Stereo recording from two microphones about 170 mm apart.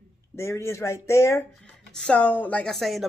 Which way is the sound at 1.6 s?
5° left (ahead or behind).